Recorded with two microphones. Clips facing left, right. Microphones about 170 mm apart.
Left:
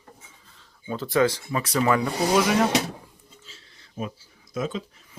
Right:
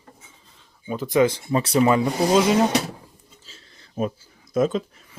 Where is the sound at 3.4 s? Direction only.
40° right (ahead or behind).